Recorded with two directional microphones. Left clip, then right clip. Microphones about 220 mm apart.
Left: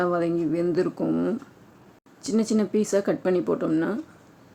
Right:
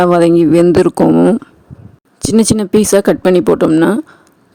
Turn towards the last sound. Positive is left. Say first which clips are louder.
# right 15 dB
turn(degrees=-45)  # may be behind; listen again after turning